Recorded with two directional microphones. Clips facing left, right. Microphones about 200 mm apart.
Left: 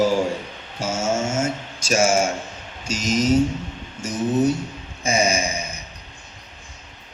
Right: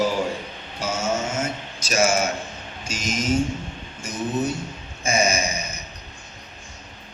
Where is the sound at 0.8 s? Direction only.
45° left (ahead or behind).